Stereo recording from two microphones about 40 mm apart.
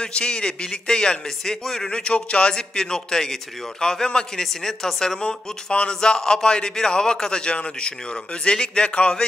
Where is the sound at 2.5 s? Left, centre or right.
Centre.